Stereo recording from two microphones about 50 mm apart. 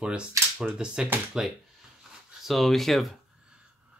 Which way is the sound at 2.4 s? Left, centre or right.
Centre.